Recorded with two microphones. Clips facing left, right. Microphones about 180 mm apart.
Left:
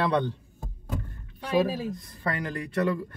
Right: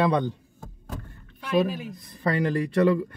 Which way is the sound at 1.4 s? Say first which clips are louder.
Right 1 dB; 30° left (ahead or behind).